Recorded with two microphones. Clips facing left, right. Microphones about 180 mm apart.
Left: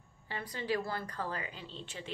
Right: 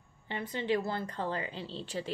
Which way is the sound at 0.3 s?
25° right (ahead or behind).